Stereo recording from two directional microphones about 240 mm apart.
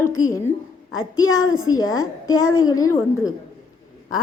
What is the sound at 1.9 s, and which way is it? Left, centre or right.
Speech, left.